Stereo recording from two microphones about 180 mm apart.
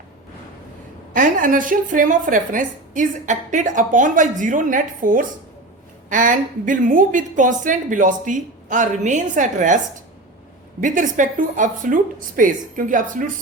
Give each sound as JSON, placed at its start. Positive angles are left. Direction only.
{"t": 1.1, "sound": "a woman's voice", "side_deg": -45}